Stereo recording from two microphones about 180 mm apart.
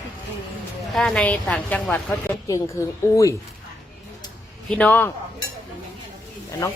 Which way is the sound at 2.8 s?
15° left (ahead or behind).